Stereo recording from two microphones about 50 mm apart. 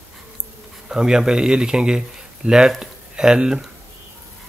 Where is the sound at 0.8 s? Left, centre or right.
Centre.